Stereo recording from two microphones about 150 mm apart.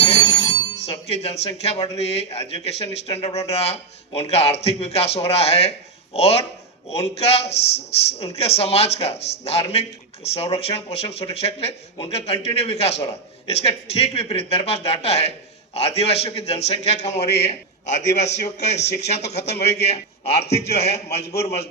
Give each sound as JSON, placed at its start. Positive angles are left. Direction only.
{"t": 0.0, "sound": "speech", "side_deg": 45}
{"t": 17.2, "sound": "a man's voice", "side_deg": 90}
{"t": 17.4, "sound": "speech", "side_deg": 45}